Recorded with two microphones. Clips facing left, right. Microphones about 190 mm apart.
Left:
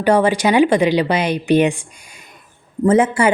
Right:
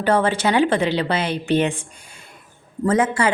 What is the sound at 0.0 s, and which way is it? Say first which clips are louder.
Speech: left 4 dB; 15° left (ahead or behind).